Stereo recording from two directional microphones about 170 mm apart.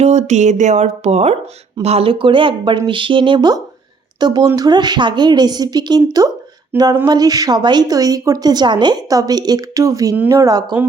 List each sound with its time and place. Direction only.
0.0 s speech: 40° right (ahead or behind); by 10.8 s 20° right (ahead or behind)